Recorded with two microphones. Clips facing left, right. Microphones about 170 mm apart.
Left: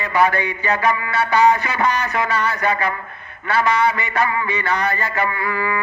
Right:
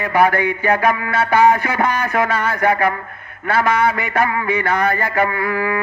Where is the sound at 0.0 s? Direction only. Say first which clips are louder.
Right 3 dB; 50° right (ahead or behind).